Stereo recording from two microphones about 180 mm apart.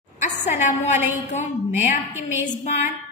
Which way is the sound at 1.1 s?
40° left (ahead or behind).